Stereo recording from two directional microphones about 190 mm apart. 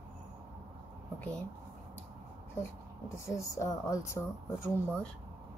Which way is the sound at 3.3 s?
15° left (ahead or behind).